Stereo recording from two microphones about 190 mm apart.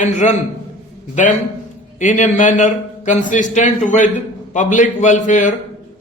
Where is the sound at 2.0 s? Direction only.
40° left (ahead or behind).